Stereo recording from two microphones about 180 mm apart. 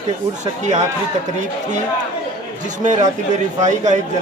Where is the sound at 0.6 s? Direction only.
40° right (ahead or behind).